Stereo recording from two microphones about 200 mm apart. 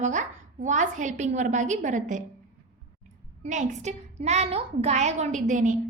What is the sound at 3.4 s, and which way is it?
A woman's voice, 35° right (ahead or behind).